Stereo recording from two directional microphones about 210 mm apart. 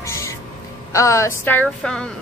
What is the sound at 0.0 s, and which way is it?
Music, 15° left (ahead or behind).